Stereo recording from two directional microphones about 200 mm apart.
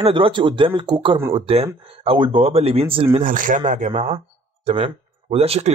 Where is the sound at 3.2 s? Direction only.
40° right (ahead or behind).